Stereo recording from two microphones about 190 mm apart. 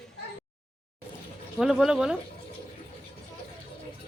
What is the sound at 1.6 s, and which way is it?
Speech, 5° right (ahead or behind).